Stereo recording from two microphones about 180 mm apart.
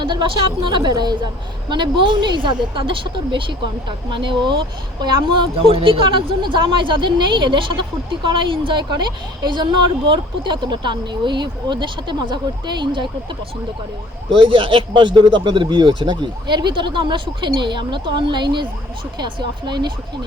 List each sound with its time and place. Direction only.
0.0 s a woman's voice: 25° right (ahead or behind)
14.3 s a woman's voice: 30° right (ahead or behind)